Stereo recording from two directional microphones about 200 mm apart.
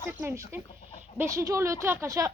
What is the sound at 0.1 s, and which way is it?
Speech, 10° right (ahead or behind).